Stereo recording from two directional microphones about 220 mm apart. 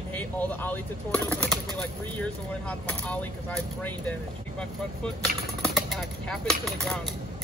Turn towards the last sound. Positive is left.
turn(degrees=0)  # may be behind; listen again after turning